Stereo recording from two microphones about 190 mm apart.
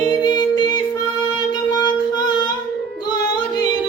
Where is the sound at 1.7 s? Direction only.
20° left (ahead or behind).